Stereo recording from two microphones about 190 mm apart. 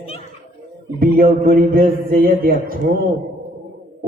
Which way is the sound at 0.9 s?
50° right (ahead or behind).